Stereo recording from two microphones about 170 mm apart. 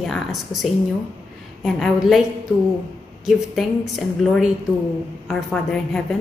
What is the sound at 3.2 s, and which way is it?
A woman's voice, centre (ahead or behind).